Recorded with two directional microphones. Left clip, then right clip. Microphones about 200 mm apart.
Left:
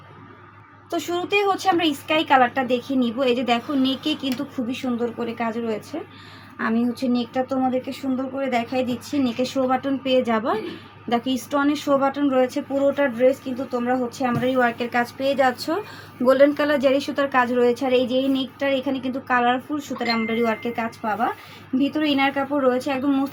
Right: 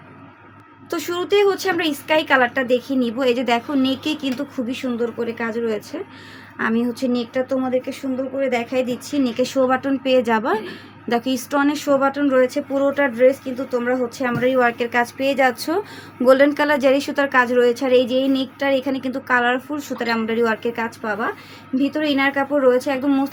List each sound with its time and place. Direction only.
0.9 s a woman's voice: 40° right (ahead or behind)